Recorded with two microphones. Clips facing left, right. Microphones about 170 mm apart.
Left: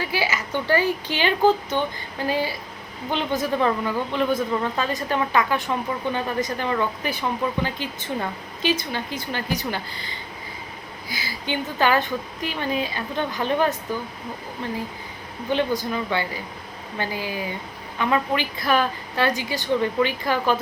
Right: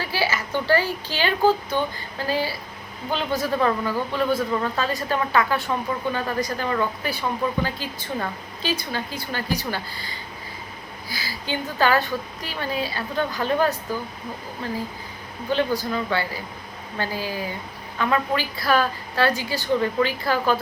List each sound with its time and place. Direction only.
0.0 s a woman's voice: 20° left (ahead or behind)
11.1 s speech: 20° left (ahead or behind)
15.4 s speech: 20° left (ahead or behind)